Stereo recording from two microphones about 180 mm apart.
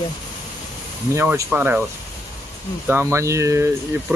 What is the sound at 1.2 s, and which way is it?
Speech, 10° right (ahead or behind).